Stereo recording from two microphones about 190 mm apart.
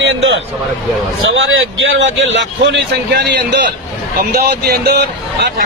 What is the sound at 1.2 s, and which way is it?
A man's voice, 90° right.